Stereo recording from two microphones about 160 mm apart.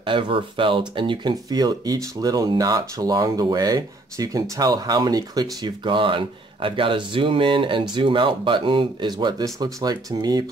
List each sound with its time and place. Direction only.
0.0 s speech: 30° right (ahead or behind)